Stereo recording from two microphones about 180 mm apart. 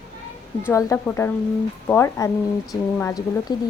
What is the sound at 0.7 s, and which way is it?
A woman's voice, 15° left (ahead or behind).